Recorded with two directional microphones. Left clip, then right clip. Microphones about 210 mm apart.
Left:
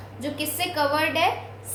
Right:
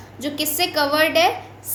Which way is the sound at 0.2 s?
40° right (ahead or behind).